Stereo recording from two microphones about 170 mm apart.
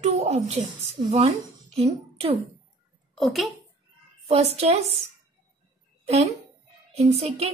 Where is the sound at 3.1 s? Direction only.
Centre (ahead or behind).